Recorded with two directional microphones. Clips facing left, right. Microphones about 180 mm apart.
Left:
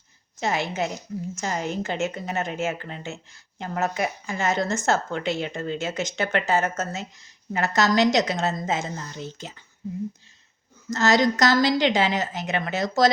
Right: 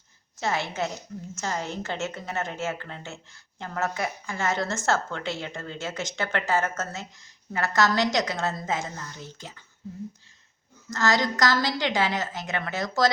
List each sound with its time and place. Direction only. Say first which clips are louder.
0.3 s a woman's voice: left 2 dB; 20° left (ahead or behind)
10.8 s speech: left 5 dB; 20° left (ahead or behind)